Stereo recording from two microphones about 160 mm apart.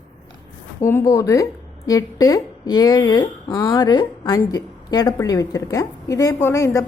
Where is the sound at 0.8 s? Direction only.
15° left (ahead or behind).